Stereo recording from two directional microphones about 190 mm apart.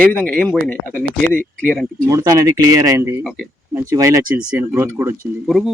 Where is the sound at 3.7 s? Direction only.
15° right (ahead or behind).